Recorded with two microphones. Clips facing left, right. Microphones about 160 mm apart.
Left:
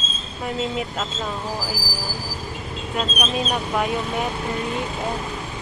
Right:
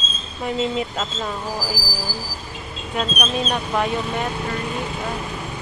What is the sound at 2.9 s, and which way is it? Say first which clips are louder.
Speech: right 1 dB; centre (ahead or behind).